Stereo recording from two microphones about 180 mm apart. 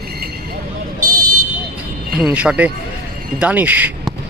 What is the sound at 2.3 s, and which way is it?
Speech, 5° right (ahead or behind).